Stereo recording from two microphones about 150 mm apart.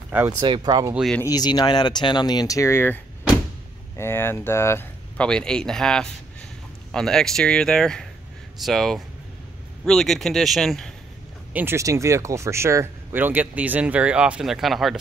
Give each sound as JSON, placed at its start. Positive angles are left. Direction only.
{"t": 0.4, "sound": "speech", "side_deg": -30}
{"t": 1.2, "sound": "speech", "side_deg": 25}
{"t": 11.5, "sound": "speech", "side_deg": -15}